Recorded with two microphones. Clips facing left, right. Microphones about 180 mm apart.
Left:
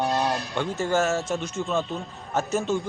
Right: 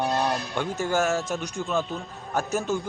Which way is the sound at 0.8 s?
Centre (ahead or behind).